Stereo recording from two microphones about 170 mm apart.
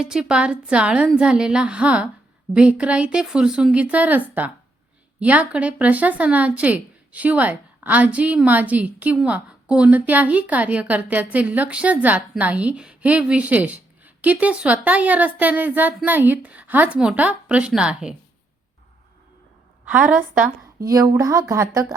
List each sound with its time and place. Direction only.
0.0 s a woman's voice: 5° right (ahead or behind)
19.8 s a woman's voice: 10° right (ahead or behind)